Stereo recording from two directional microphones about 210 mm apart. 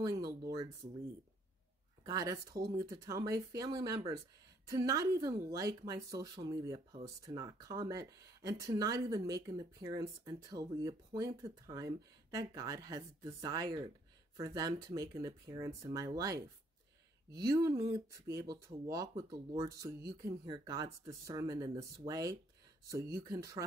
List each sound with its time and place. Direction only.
0.0 s speech: 20° right (ahead or behind)
2.0 s speech: 15° right (ahead or behind)